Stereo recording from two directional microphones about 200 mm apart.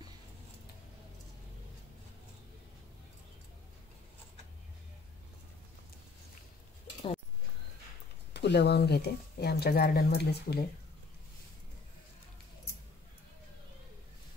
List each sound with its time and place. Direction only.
8.3 s speech: 55° left (ahead or behind)